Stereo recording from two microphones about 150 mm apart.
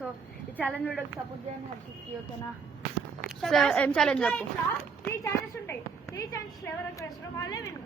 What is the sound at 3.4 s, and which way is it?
A woman's voice, centre (ahead or behind).